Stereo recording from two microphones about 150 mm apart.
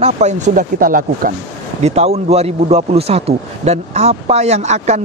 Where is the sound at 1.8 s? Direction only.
45° right (ahead or behind).